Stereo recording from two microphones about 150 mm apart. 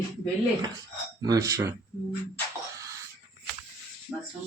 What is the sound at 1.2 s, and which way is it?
Speech, 25° right (ahead or behind).